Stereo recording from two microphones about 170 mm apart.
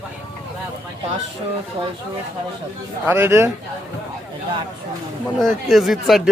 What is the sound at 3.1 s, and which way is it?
Speech, 15° right (ahead or behind).